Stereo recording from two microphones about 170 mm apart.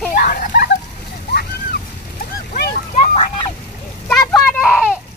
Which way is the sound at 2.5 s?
50° left (ahead or behind).